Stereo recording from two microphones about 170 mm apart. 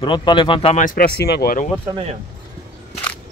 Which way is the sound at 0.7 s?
55° left (ahead or behind).